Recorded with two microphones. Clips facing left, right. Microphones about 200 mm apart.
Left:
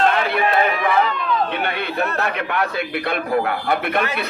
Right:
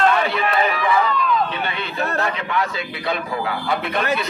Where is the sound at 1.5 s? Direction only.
60° left (ahead or behind).